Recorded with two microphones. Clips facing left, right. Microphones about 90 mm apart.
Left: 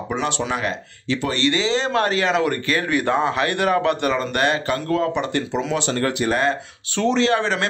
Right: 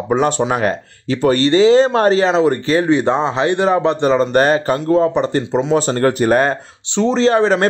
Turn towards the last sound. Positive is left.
turn(degrees=-35)  # may be behind; listen again after turning